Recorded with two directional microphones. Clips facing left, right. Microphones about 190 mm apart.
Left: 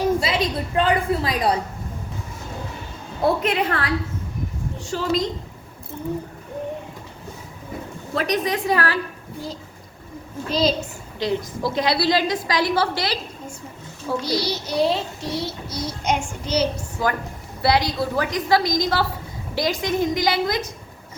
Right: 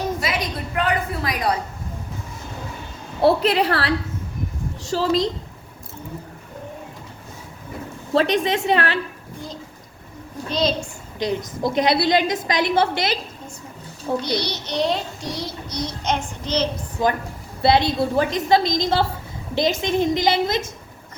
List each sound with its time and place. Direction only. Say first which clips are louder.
0.2 s a woman's voice: left 3 dB; 25° left (ahead or behind)
3.2 s a woman's voice: right 3 dB; 35° right (ahead or behind)
8.1 s a woman's voice: right 4 dB; 25° right (ahead or behind)
10.5 s a woman's voice: left 1 dB; 5° left (ahead or behind)
11.2 s a woman's voice: even; 20° right (ahead or behind)
14.3 s child singing: left 2 dB; 5° left (ahead or behind)
17.0 s a woman's voice: right 3 dB; 20° right (ahead or behind)